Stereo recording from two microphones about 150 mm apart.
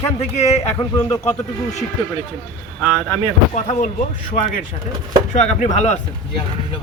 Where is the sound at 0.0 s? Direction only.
45° left (ahead or behind).